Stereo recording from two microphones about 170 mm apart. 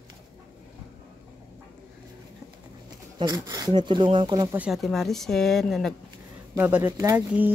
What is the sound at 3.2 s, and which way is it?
Speech, 20° right (ahead or behind).